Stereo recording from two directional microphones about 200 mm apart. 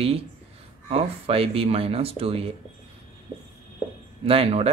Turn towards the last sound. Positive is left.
turn(degrees=-30)  # may be behind; listen again after turning